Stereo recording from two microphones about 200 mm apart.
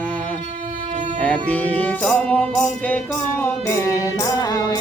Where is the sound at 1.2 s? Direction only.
5° left (ahead or behind).